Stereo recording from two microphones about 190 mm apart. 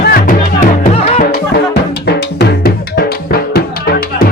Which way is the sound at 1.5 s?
60° left (ahead or behind).